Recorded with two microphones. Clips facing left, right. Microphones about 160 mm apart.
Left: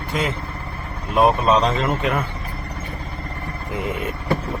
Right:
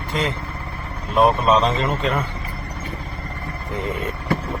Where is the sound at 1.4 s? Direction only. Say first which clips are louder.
Even; centre (ahead or behind).